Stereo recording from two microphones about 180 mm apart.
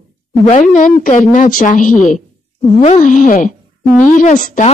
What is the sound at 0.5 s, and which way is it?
Speech, 45° left (ahead or behind).